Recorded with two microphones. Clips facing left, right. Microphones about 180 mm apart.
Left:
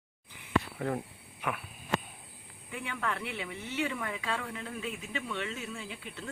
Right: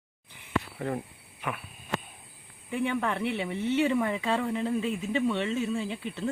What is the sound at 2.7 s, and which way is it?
Speech, 30° right (ahead or behind).